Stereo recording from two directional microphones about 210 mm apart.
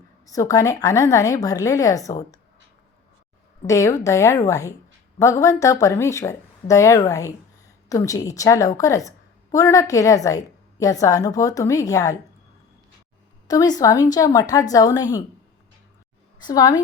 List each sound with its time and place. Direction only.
0.3 s a woman's voice: 15° left (ahead or behind)
3.7 s a woman's voice: 15° left (ahead or behind)
13.5 s a woman's voice: 20° left (ahead or behind)
16.4 s a woman's voice: 20° left (ahead or behind)